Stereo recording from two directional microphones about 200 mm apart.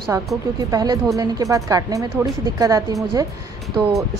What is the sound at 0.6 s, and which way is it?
Speech, 20° right (ahead or behind).